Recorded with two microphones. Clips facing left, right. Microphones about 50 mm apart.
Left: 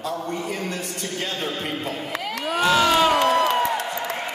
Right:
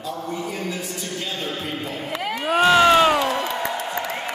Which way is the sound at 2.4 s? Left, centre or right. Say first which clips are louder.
Right 4 dB; right.